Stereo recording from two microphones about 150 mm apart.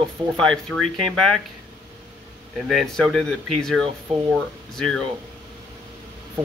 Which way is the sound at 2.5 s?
Centre (ahead or behind).